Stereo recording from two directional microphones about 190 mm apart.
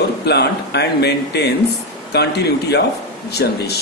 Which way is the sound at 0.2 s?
60° left (ahead or behind).